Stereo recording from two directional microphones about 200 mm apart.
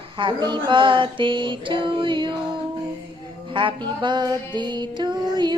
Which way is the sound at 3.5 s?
25° right (ahead or behind).